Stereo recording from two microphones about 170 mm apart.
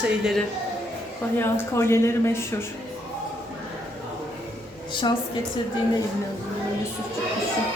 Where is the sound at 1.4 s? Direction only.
15° left (ahead or behind).